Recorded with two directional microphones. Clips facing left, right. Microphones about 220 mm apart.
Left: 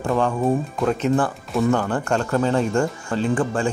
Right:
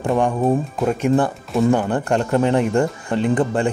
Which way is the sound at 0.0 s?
20° right (ahead or behind).